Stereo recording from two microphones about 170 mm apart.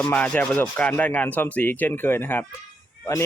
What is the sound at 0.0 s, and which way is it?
Rub, 5° left (ahead or behind).